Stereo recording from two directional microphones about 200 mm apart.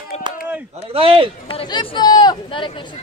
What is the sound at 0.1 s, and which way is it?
Chop, 35° left (ahead or behind).